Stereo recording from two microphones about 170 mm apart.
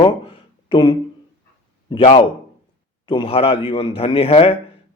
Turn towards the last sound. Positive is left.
turn(degrees=35)  # may be behind; listen again after turning